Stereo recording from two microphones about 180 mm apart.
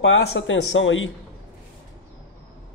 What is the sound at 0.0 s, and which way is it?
Speech, 90° left.